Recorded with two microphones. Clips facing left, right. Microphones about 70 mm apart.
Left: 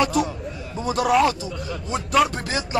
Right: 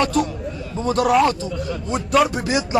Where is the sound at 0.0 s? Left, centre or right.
Centre.